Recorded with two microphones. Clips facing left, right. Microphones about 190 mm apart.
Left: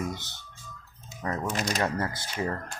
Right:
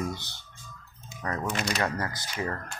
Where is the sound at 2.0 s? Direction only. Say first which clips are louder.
Left 2 dB; 25° left (ahead or behind).